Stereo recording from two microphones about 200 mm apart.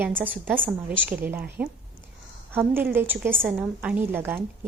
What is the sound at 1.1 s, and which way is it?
A woman's voice, 10° right (ahead or behind).